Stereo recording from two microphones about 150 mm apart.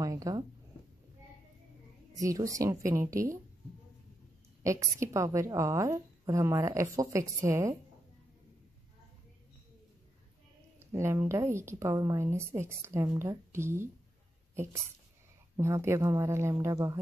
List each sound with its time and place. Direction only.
0.0 s speech: 20° right (ahead or behind)
2.1 s a woman's voice: 20° right (ahead or behind)
4.6 s a woman's voice: 20° right (ahead or behind)
10.9 s speech: 20° right (ahead or behind)
14.5 s a sound: 15° right (ahead or behind)
15.5 s a woman's voice: 20° right (ahead or behind)